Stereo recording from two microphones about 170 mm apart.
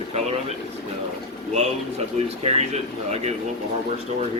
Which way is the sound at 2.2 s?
40° right (ahead or behind).